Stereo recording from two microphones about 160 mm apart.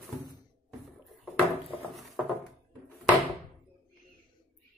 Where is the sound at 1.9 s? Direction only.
Centre (ahead or behind).